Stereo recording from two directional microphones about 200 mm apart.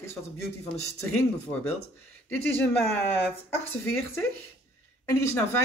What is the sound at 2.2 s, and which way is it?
Speech, 10° left (ahead or behind).